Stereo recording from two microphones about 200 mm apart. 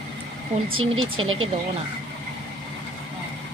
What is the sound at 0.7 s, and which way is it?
Speech, 90° right.